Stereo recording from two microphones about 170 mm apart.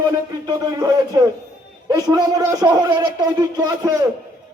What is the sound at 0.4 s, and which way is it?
A man's voice, 20° right (ahead or behind).